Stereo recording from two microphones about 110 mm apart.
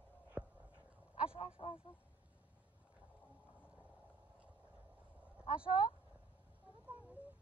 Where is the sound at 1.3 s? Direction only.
55° left (ahead or behind).